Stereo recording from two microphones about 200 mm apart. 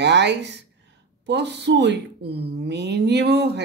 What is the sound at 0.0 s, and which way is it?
Speech, 60° right (ahead or behind).